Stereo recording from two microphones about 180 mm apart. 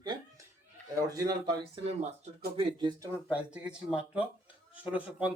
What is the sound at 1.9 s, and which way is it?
Speech, 35° right (ahead or behind).